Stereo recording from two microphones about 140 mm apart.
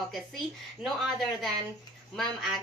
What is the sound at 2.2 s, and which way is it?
Speech, centre (ahead or behind).